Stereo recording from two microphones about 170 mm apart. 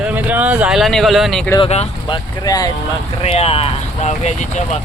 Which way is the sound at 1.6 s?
35° left (ahead or behind).